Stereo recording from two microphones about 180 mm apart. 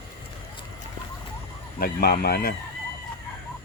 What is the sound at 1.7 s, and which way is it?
Speech, 55° left (ahead or behind).